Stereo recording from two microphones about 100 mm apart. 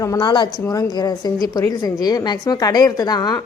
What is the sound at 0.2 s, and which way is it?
A man's voice, 50° left (ahead or behind).